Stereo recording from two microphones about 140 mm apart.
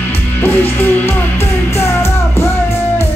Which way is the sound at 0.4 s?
15° left (ahead or behind).